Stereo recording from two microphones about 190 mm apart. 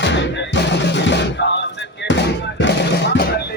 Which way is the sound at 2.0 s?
70° left (ahead or behind).